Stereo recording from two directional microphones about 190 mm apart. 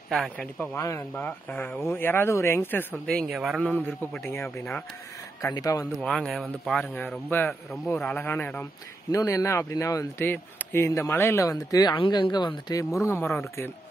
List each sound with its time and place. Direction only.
0.1 s speech: centre (ahead or behind)
0.7 s speech: 15° left (ahead or behind)
3.1 s speech: centre (ahead or behind)
5.4 s speech: 20° left (ahead or behind)
5.9 s speech: 5° left (ahead or behind)